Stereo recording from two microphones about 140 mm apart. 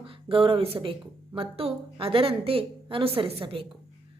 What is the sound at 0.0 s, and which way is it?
A woman's voice, 40° right (ahead or behind).